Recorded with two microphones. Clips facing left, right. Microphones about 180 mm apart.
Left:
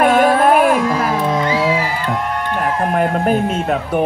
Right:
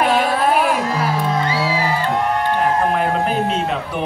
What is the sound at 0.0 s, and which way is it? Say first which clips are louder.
Music: left 5 dB; 50° left (ahead or behind).